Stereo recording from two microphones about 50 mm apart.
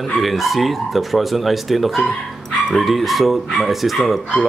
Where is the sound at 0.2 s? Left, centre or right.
Centre.